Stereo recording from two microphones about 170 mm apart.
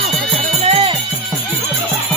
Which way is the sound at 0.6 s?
35° right (ahead or behind).